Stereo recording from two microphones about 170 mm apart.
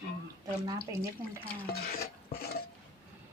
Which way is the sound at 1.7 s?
65° left (ahead or behind).